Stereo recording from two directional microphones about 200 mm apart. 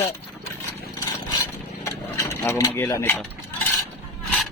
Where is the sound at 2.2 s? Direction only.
15° left (ahead or behind).